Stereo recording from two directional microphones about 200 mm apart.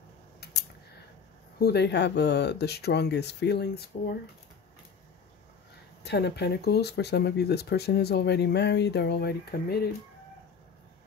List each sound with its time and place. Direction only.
0.4 s a sound: 55° left (ahead or behind)
1.6 s speech: 55° left (ahead or behind)
6.0 s speech: 55° left (ahead or behind)